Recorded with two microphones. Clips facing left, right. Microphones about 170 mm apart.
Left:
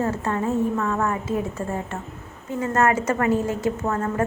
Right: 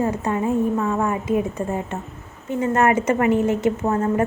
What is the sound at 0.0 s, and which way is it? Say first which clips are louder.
A woman's voice: right 2 dB; 15° right (ahead or behind).